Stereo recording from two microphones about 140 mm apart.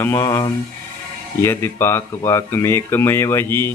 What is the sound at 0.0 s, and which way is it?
Speech, 20° left (ahead or behind).